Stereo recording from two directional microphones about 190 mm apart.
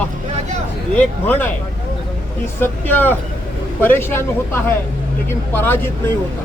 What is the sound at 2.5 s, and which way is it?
Speech, 10° left (ahead or behind).